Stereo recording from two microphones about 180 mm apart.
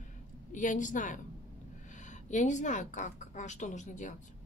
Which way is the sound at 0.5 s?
45° left (ahead or behind).